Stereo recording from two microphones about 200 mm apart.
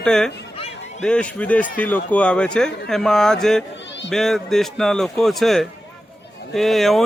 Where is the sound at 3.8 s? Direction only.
60° left (ahead or behind).